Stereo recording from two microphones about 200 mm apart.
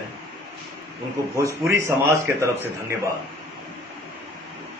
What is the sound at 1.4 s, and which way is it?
Speech, 15° right (ahead or behind).